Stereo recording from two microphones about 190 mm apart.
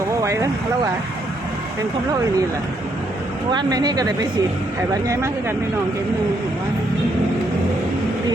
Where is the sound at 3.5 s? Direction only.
20° right (ahead or behind).